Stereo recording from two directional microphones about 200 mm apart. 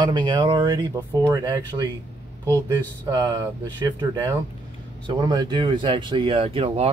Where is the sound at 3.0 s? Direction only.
20° right (ahead or behind).